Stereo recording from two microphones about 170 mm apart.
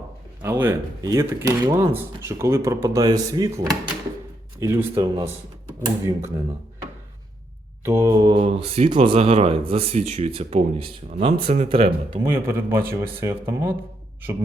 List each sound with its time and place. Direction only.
0.4 s speech: 15° right (ahead or behind)
4.6 s speech: 15° right (ahead or behind)
7.9 s speech: 15° right (ahead or behind); by 12.2 s 30° right (ahead or behind)
12.2 s speech: 15° right (ahead or behind)